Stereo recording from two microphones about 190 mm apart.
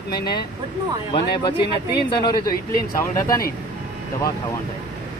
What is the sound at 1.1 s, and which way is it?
Speech, 25° left (ahead or behind).